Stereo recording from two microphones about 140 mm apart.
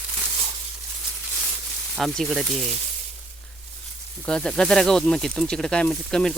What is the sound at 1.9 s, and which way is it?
Speech, centre (ahead or behind).